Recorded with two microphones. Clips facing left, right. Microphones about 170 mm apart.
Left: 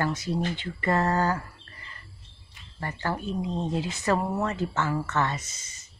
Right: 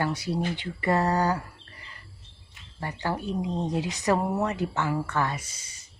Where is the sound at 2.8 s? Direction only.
15° right (ahead or behind).